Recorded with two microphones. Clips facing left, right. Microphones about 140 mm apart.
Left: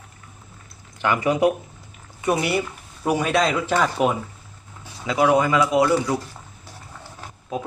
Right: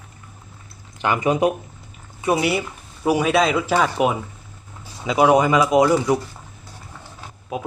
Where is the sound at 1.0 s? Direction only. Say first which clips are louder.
Even; 20° right (ahead or behind).